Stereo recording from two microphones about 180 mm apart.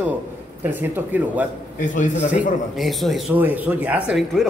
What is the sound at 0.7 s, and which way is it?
Speech, 10° right (ahead or behind).